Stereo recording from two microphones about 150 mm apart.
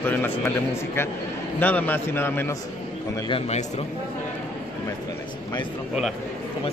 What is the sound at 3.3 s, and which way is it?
Speech, 40° left (ahead or behind).